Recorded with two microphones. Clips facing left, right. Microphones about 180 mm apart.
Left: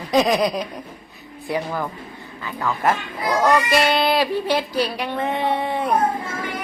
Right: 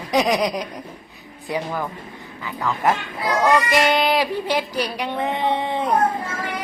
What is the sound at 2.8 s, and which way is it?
Speech, 15° right (ahead or behind).